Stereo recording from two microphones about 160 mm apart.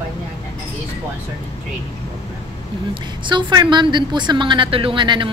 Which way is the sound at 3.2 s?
30° right (ahead or behind).